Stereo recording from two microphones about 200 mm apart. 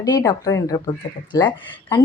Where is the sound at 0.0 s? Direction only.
20° left (ahead or behind).